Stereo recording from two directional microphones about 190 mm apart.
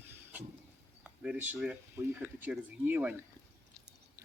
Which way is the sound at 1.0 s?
5° right (ahead or behind).